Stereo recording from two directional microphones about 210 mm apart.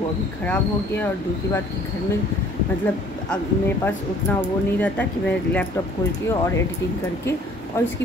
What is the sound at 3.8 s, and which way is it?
Speech, 10° left (ahead or behind).